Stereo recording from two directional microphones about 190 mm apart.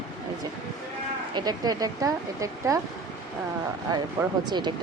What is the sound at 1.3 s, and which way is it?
Speech, 20° right (ahead or behind).